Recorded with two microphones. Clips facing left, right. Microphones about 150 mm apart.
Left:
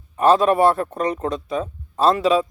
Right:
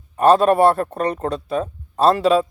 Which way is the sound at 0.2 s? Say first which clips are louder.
Right 2 dB; 60° right (ahead or behind).